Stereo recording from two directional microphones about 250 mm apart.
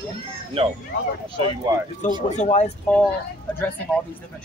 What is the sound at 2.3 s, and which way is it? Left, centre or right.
Speech, left.